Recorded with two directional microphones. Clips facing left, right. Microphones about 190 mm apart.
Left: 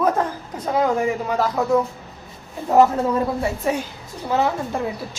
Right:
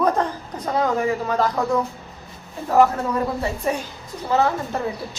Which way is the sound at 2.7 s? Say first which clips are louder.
Left 2 dB; 25° left (ahead or behind).